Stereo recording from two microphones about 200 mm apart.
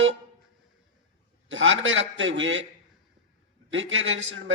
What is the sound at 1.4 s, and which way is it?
A man's voice, 75° right (ahead or behind).